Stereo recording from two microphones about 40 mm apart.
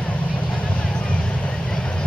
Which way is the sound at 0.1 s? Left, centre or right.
Left.